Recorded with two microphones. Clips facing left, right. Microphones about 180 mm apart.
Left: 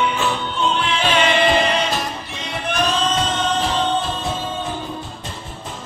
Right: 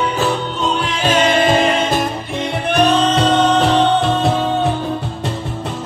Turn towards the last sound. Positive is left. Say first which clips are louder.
# right 9 dB
turn(degrees=-70)  # may be behind; listen again after turning